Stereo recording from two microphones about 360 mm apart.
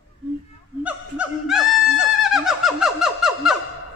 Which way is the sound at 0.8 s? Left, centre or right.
Centre.